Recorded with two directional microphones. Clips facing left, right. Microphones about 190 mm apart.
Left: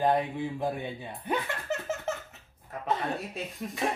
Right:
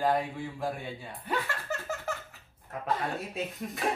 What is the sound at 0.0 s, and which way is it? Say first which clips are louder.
A man's voice: left 2 dB; 20° left (ahead or behind).